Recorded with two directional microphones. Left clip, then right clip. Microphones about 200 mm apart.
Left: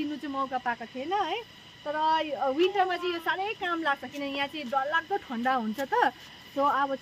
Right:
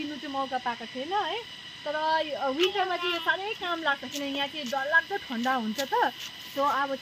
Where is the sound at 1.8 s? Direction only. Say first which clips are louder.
Left 1 dB; 20° left (ahead or behind).